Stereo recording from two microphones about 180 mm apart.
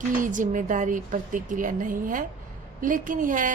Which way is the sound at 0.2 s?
45° right (ahead or behind).